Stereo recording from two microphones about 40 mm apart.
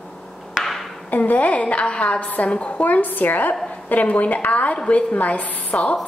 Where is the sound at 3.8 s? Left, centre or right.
Left.